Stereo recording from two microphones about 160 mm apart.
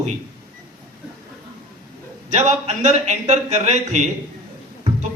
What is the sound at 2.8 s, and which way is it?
Speech, 45° right (ahead or behind).